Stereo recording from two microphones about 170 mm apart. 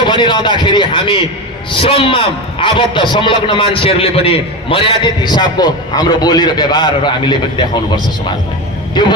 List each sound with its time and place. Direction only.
0.0 s a man's voice: 25° left (ahead or behind)
9.0 s a man's voice: 25° left (ahead or behind)